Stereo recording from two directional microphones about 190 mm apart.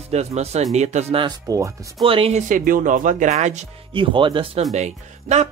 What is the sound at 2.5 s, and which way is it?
Speech, 45° right (ahead or behind).